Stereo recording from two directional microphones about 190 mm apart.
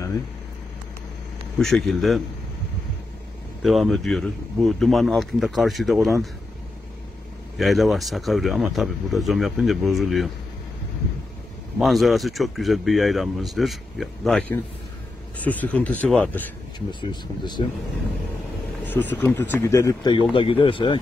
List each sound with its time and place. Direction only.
1.6 s speech: centre (ahead or behind)
3.6 s speech: centre (ahead or behind)
7.5 s speech: centre (ahead or behind)
11.8 s speech: centre (ahead or behind)
17.0 s speech: 25° left (ahead or behind)
18.9 s speech: 10° left (ahead or behind); by 21.0 s 25° left (ahead or behind)